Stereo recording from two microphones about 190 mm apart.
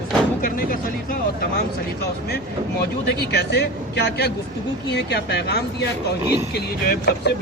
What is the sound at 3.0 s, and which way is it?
Speech, 60° left (ahead or behind).